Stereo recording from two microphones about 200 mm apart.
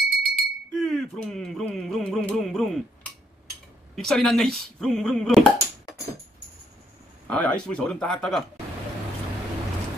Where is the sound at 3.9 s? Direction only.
Centre (ahead or behind).